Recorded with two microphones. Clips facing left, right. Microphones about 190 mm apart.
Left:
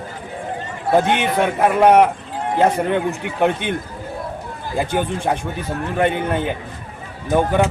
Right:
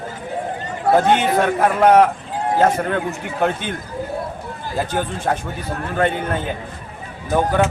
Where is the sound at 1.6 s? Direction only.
15° left (ahead or behind).